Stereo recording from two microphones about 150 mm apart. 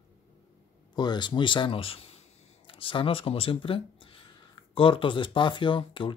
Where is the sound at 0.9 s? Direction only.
30° left (ahead or behind).